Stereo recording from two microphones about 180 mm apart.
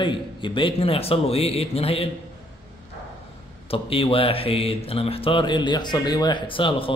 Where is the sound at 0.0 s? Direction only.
25° left (ahead or behind).